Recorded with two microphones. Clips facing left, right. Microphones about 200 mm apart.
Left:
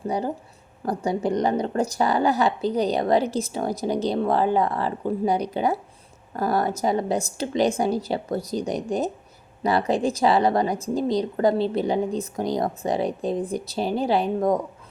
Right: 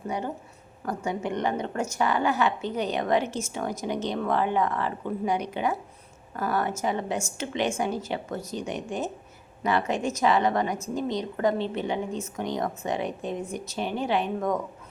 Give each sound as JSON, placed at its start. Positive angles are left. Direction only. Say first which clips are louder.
{"t": 0.1, "sound": "a woman's voice", "louder": "left 5 dB", "side_deg": 35}